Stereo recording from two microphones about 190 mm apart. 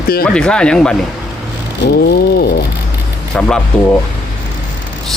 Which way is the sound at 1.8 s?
55° left (ahead or behind).